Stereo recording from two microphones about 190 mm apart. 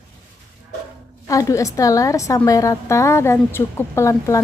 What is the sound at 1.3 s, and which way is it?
A woman's voice, 15° left (ahead or behind).